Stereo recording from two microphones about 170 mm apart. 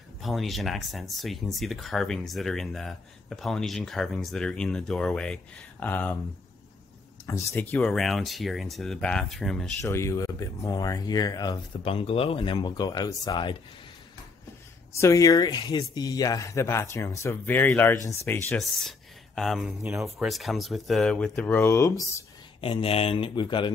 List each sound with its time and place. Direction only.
0.2 s speech: centre (ahead or behind)
7.2 s speech: 15° left (ahead or behind)
9.8 s speech: 15° left (ahead or behind)
15.0 s speech: 20° left (ahead or behind)
18.6 s speech: centre (ahead or behind); by 22.2 s 20° left (ahead or behind)
22.6 s speech: 35° left (ahead or behind)